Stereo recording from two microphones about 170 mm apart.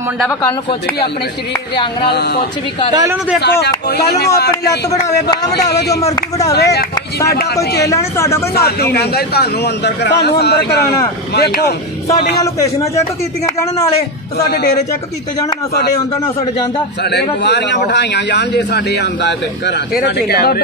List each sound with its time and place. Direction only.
0.3 s speech: 15° left (ahead or behind)
2.0 s a man's voice: 70° left (ahead or behind)
2.9 s speech: 20° right (ahead or behind)
3.3 s a man's voice: 75° left (ahead or behind)
4.5 s a man's voice: 20° left (ahead or behind)
5.5 s a man's voice: 75° left (ahead or behind)
7.9 s speech: 15° left (ahead or behind)
8.9 s a man's voice: 70° left (ahead or behind)
12.4 s a man's voice: 20° left (ahead or behind)
17.0 s a man's voice: 75° left (ahead or behind)